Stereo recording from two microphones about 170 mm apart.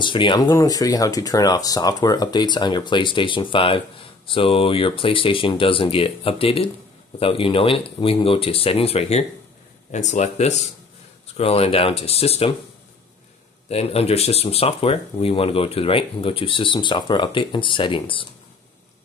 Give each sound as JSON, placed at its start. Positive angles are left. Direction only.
{"t": 0.0, "sound": "speech", "side_deg": 30}
{"t": 13.7, "sound": "speech", "side_deg": 35}